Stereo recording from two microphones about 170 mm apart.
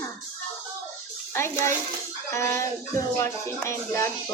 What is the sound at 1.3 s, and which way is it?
A child's voice, 15° left (ahead or behind).